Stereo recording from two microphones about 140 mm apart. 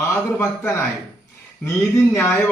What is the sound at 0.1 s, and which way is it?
Speech, 15° left (ahead or behind).